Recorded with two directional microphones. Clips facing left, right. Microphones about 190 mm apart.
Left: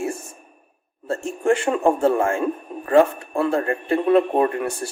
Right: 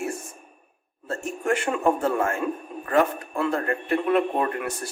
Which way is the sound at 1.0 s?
30° left (ahead or behind).